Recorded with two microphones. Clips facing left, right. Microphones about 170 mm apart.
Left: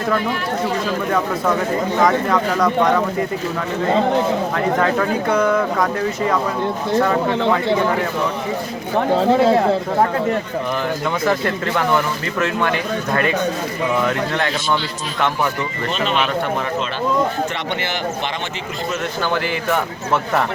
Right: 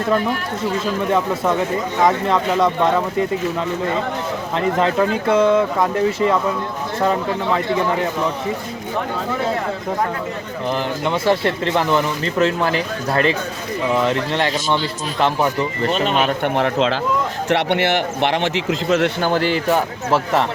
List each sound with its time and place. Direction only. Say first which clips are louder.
2.0 s speech: even; 25° right (ahead or behind)
4.5 s speech: right 5 dB; 25° right (ahead or behind)
9.1 s speech: left 11 dB; 30° left (ahead or behind)
11.1 s speech: right 3 dB; 30° right (ahead or behind)
15.9 s speech: right 1 dB; 45° right (ahead or behind)
16.4 s a man's voice: right 4 dB; 75° right (ahead or behind)
17.5 s a man's voice: right 7 dB; 70° right (ahead or behind)
19.2 s speech: right 3 dB; 40° right (ahead or behind)